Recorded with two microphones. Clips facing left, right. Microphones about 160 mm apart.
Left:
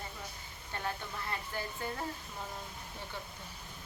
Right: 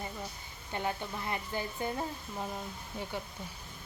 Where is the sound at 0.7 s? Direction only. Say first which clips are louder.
Right 4 dB; 20° right (ahead or behind).